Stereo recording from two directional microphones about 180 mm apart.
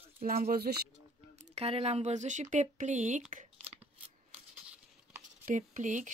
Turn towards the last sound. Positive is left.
turn(degrees=-45)  # may be behind; listen again after turning